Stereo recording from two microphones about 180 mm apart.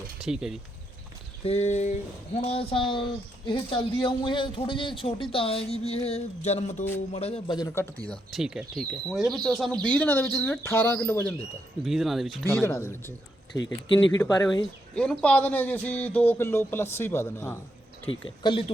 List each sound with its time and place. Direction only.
0.3 s speech: 5° right (ahead or behind)
1.5 s a man's voice: 40° left (ahead or behind); by 11.3 s 10° left (ahead or behind)
11.8 s speech: centre (ahead or behind)
12.5 s a man's voice: 15° left (ahead or behind)
14.9 s a man's voice: 5° left (ahead or behind)
18.4 s speech: 30° left (ahead or behind)